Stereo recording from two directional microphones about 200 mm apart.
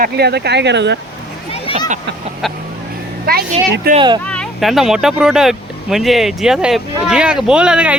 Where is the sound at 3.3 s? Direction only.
50° right (ahead or behind).